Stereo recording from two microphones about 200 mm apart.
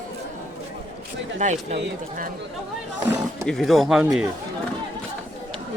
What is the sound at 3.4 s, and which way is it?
Speech, centre (ahead or behind).